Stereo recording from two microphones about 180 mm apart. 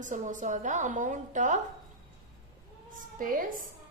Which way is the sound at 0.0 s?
45° right (ahead or behind).